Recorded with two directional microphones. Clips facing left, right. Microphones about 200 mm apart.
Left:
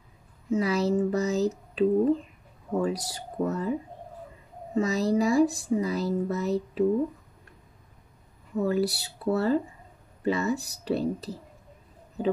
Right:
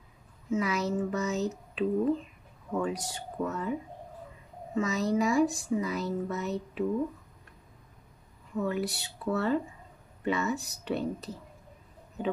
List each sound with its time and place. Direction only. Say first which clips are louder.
0.5 s speech: left 5 dB; 35° left (ahead or behind)
4.7 s speech: left 3 dB; 35° left (ahead or behind)
8.5 s speech: left 5 dB; 35° left (ahead or behind)